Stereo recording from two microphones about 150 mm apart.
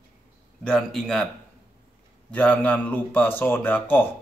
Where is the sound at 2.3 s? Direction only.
10° left (ahead or behind).